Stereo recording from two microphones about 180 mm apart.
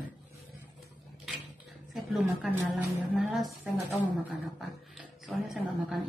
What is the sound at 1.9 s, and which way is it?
A woman's voice, centre (ahead or behind).